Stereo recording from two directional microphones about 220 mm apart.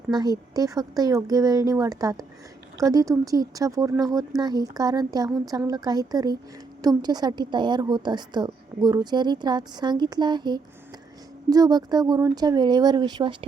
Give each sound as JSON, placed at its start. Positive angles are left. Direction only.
{"t": 0.1, "sound": "a woman's voice", "side_deg": -20}